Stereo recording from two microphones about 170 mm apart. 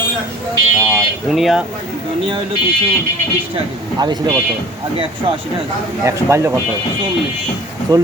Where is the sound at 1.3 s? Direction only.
Centre (ahead or behind).